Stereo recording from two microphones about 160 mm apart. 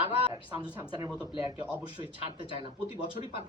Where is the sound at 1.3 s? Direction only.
30° left (ahead or behind).